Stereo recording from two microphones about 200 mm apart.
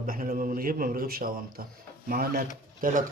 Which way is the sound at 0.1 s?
45° right (ahead or behind).